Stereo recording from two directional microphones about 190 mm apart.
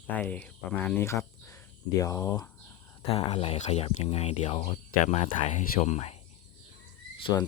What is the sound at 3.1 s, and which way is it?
Speech, 30° left (ahead or behind).